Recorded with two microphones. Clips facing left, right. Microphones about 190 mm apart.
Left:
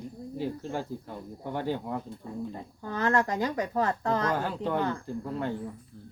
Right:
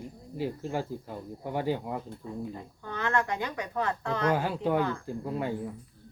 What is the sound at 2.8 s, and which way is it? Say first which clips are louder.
A woman's voice: left 3 dB; 40° left (ahead or behind).